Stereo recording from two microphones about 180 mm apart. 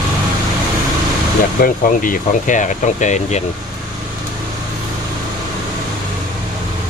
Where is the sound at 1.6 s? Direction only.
50° left (ahead or behind).